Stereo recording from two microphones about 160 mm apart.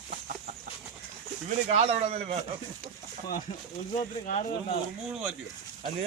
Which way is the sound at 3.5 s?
45° left (ahead or behind).